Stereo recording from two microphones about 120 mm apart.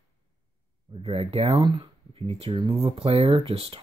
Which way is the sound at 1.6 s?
35° right (ahead or behind).